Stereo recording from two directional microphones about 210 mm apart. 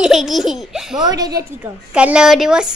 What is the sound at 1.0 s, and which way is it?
Speech, 20° right (ahead or behind).